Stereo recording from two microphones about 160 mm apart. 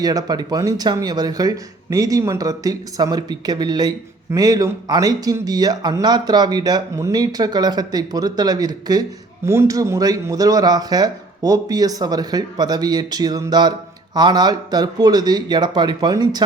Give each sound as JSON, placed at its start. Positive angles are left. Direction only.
{"t": 0.0, "sound": "speech", "side_deg": -25}